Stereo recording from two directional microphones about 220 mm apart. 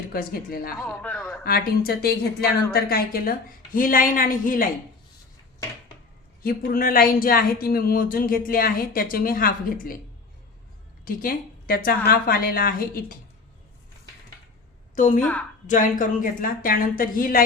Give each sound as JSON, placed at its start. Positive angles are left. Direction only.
{"t": 0.1, "sound": "speech", "side_deg": 40}
{"t": 0.8, "sound": "a man's voice", "side_deg": 5}
{"t": 1.5, "sound": "speech", "side_deg": 45}
{"t": 6.4, "sound": "speech", "side_deg": 40}
{"t": 11.0, "sound": "speech", "side_deg": 40}
{"t": 14.9, "sound": "a woman's voice", "side_deg": 35}
{"t": 15.2, "sound": "a woman's voice", "side_deg": 5}
{"t": 15.6, "sound": "speech", "side_deg": 35}